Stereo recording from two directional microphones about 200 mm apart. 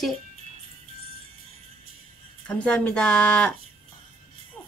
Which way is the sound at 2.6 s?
5° left (ahead or behind).